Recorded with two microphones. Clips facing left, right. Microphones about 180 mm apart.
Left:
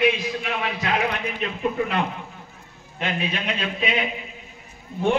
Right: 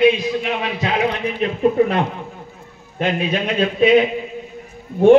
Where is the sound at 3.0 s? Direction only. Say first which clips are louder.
Right 7 dB; 45° right (ahead or behind).